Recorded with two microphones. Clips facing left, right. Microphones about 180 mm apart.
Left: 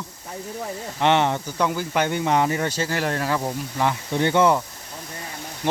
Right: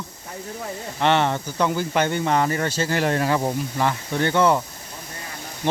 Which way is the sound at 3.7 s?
10° left (ahead or behind).